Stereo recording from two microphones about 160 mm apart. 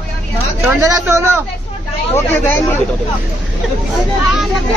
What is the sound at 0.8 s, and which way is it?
Speech, 15° right (ahead or behind).